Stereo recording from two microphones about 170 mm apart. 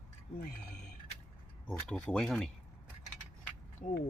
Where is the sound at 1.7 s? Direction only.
5° left (ahead or behind).